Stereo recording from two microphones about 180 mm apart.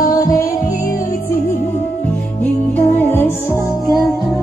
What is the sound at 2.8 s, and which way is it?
Music, 10° left (ahead or behind).